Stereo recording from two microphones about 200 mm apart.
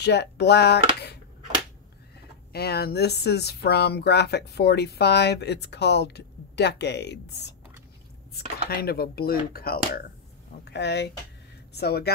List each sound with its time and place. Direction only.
0.0 s speech: 55° left (ahead or behind)
2.5 s speech: 50° left (ahead or behind)
8.6 s speech: 50° left (ahead or behind)